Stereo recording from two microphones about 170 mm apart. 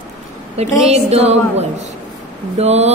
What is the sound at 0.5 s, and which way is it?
A woman's voice, 40° right (ahead or behind).